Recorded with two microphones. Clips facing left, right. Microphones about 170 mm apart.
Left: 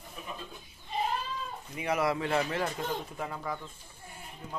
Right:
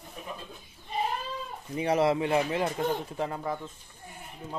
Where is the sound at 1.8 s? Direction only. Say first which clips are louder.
Right 5 dB; 30° right (ahead or behind).